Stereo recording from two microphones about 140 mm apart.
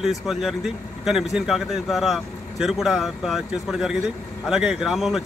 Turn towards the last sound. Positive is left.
turn(degrees=0)  # may be behind; listen again after turning